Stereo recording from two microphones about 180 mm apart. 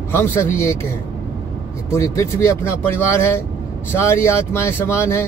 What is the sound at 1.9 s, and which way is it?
Speech, 15° left (ahead or behind).